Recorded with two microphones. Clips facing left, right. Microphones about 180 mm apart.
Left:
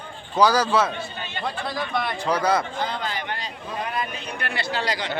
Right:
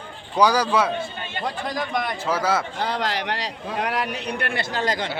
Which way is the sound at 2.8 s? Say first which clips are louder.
Right 3 dB; 75° right (ahead or behind).